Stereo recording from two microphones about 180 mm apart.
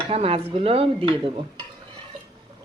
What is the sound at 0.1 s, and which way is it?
Speech, 35° right (ahead or behind).